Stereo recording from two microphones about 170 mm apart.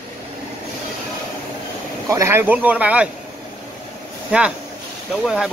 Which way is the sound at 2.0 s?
15° right (ahead or behind).